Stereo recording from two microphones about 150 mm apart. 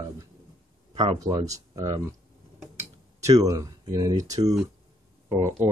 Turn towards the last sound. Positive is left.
turn(degrees=-20)  # may be behind; listen again after turning